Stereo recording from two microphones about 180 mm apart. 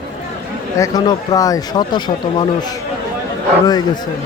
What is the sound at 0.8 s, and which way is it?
Speech, 20° left (ahead or behind).